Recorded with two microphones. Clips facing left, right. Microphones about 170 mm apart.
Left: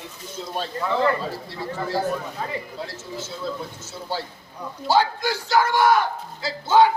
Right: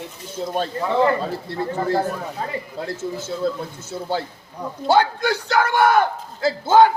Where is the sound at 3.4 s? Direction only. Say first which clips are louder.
Right 7 dB; 55° right (ahead or behind).